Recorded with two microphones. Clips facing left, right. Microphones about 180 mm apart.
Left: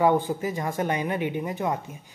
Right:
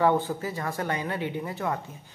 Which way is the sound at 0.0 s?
15° left (ahead or behind).